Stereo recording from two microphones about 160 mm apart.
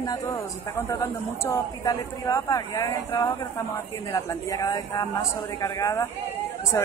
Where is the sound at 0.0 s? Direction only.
20° left (ahead or behind).